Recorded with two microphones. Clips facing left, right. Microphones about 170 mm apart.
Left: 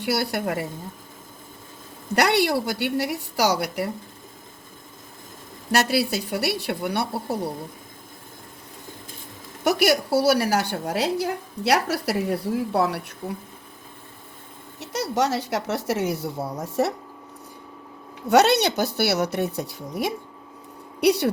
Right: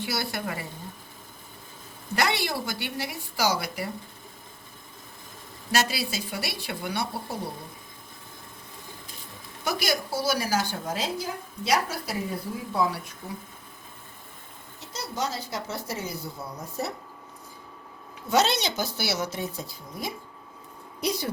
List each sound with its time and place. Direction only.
0.0 s a woman's voice: 65° left (ahead or behind)
2.1 s a woman's voice: 70° left (ahead or behind)
5.7 s speech: 65° left (ahead or behind)
9.6 s a woman's voice: 70° left (ahead or behind)
14.8 s speech: 80° left
18.3 s a woman's voice: 65° left (ahead or behind)